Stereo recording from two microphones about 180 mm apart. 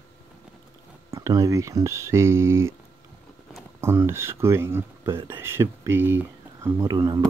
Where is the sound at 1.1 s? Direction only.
15° right (ahead or behind).